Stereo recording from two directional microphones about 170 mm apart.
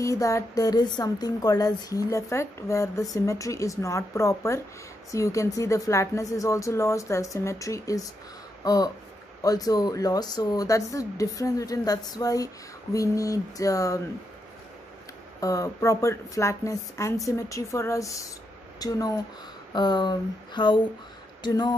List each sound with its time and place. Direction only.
0.0 s speech: 20° left (ahead or behind)
15.4 s speech: 20° left (ahead or behind)